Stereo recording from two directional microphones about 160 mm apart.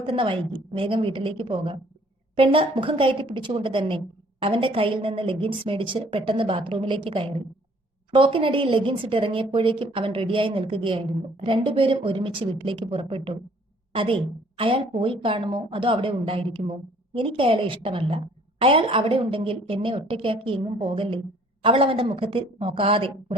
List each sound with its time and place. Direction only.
0.0 s a woman's voice: 35° right (ahead or behind)